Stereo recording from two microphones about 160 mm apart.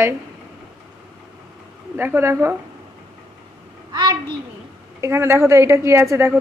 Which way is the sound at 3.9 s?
25° right (ahead or behind).